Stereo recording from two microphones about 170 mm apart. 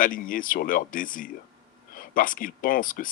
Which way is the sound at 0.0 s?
55° left (ahead or behind).